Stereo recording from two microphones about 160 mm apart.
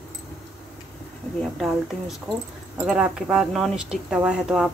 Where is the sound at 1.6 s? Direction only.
Centre (ahead or behind).